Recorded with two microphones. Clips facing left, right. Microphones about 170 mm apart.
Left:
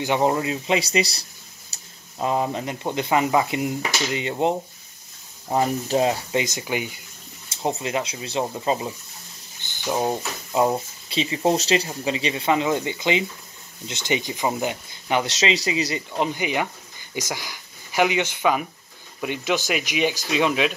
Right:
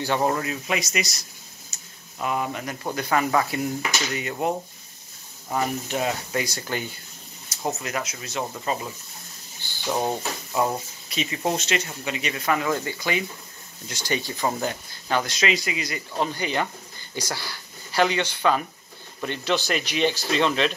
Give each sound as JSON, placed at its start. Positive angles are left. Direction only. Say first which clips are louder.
{"t": 0.0, "sound": "speech", "louder": "left 3 dB", "side_deg": 20}
{"t": 1.7, "sound": "a sound", "louder": "left 1 dB", "side_deg": 35}
{"t": 2.1, "sound": "speech", "louder": "left 4 dB", "side_deg": 30}
{"t": 7.6, "sound": "speech", "louder": "left 4 dB", "side_deg": 25}
{"t": 9.8, "sound": "speech", "louder": "left 2 dB", "side_deg": 10}
{"t": 10.5, "sound": "speech", "louder": "left 4 dB", "side_deg": 20}
{"t": 15.6, "sound": "speech", "louder": "left 6 dB", "side_deg": 30}
{"t": 16.2, "sound": "speech", "louder": "left 1 dB", "side_deg": 15}